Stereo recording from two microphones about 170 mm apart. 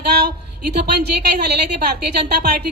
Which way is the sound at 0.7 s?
70° right (ahead or behind).